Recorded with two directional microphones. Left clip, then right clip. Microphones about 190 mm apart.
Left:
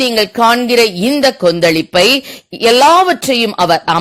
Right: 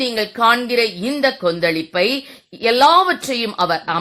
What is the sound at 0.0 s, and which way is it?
Speech, 40° left (ahead or behind).